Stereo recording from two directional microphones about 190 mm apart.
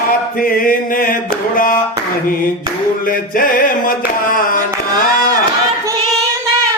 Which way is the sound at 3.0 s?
45° left (ahead or behind).